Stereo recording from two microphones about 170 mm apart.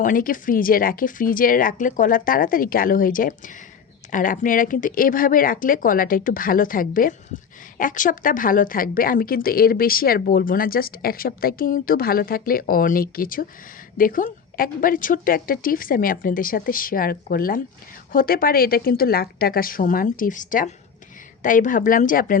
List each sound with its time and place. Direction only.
0.0 s a woman's voice: 55° left (ahead or behind)